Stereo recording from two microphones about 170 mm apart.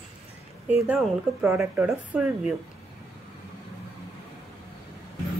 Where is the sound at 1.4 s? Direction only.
15° right (ahead or behind).